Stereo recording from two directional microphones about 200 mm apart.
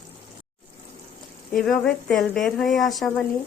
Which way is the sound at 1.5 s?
5° left (ahead or behind).